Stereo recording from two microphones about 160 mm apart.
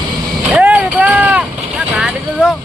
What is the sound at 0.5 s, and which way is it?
Vehicle, 10° right (ahead or behind).